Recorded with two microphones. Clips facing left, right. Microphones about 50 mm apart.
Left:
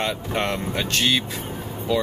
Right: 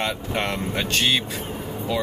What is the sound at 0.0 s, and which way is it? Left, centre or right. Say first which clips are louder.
Speech: left 1 dB; centre.